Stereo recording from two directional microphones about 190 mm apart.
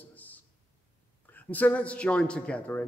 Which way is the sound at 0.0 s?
10° left (ahead or behind).